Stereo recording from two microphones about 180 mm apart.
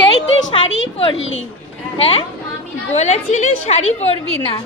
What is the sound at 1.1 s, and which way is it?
Speech, 90° left.